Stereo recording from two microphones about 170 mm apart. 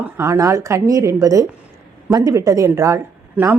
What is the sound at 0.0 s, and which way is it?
Speech, 15° right (ahead or behind).